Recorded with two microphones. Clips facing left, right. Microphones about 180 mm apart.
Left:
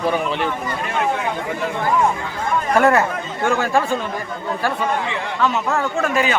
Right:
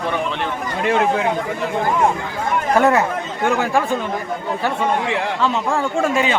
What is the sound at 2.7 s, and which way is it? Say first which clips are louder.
Speech: even; 20° right (ahead or behind).